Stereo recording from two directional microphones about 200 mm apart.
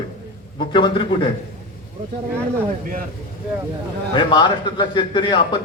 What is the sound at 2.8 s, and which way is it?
Speech, 45° right (ahead or behind).